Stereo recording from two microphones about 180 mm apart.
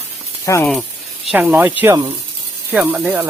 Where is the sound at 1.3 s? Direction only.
10° right (ahead or behind).